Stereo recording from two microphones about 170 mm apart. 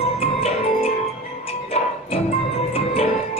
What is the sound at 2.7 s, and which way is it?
Music, 35° left (ahead or behind).